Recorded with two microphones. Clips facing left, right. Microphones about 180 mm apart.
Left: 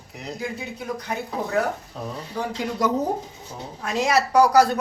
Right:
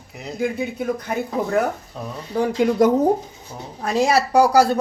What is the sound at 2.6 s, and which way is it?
Speech, 55° right (ahead or behind).